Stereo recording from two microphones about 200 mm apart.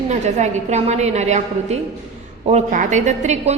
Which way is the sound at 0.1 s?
35° right (ahead or behind).